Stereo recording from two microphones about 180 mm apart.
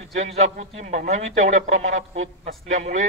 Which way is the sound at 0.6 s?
40° right (ahead or behind).